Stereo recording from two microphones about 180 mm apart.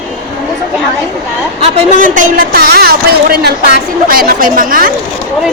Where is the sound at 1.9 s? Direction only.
45° right (ahead or behind).